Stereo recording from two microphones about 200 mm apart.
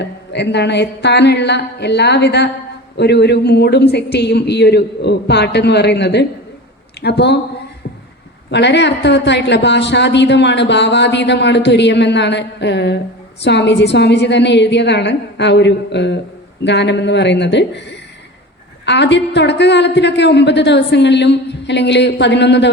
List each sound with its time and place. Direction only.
0.0 s a woman's voice: 60° left (ahead or behind)
8.4 s a woman's voice: 60° left (ahead or behind)
18.9 s a woman's voice: 60° left (ahead or behind)